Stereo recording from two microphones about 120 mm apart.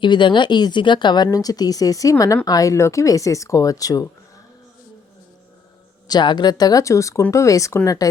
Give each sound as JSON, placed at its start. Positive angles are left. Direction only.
{"t": 0.0, "sound": "speech", "side_deg": 40}
{"t": 6.1, "sound": "speech", "side_deg": 35}